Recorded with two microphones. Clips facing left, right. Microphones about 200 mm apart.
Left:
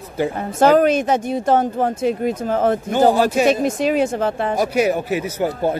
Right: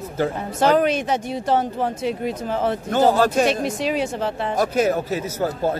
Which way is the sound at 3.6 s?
50° left (ahead or behind).